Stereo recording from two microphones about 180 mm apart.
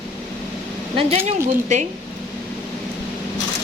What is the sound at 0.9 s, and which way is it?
Speech, 35° right (ahead or behind).